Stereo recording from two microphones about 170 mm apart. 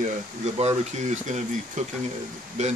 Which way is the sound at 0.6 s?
40° right (ahead or behind).